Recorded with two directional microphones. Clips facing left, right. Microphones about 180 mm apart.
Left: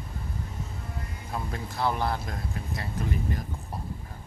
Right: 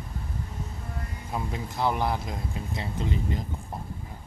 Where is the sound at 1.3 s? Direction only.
15° right (ahead or behind).